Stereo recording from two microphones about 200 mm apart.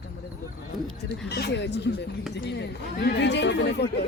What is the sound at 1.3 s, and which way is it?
A woman's voice, 55° left (ahead or behind).